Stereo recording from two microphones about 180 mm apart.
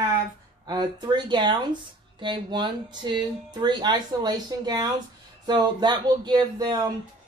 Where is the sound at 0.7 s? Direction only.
25° right (ahead or behind).